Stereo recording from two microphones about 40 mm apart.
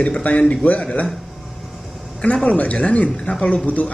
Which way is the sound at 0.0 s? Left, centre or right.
Left.